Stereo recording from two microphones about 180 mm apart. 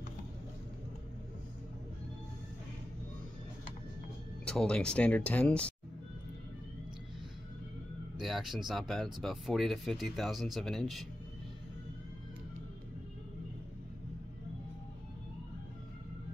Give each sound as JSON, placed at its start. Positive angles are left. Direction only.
{"t": 4.5, "sound": "speech", "side_deg": 5}
{"t": 8.2, "sound": "speech", "side_deg": 0}